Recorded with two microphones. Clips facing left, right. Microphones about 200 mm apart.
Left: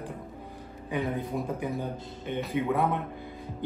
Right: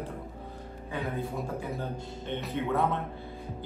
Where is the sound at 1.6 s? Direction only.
15° left (ahead or behind).